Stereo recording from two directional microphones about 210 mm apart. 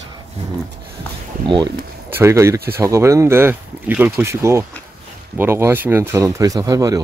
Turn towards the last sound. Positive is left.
turn(degrees=-15)  # may be behind; listen again after turning